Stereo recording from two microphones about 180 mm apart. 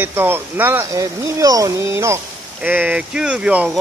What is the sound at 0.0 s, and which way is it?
Speech, 10° right (ahead or behind).